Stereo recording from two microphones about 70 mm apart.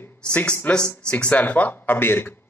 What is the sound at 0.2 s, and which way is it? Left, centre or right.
A man's voice, centre.